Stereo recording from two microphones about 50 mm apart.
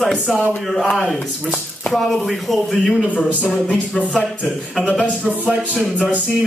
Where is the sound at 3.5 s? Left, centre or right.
Left.